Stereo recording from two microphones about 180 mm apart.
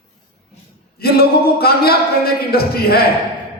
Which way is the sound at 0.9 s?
60° left (ahead or behind).